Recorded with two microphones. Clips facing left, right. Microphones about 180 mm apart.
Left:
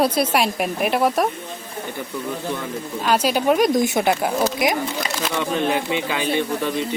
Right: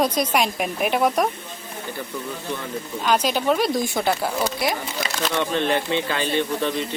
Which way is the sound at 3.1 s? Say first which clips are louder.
Left 2 dB; 10° left (ahead or behind).